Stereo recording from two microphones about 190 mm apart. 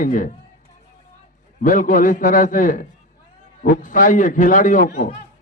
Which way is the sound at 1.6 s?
45° left (ahead or behind).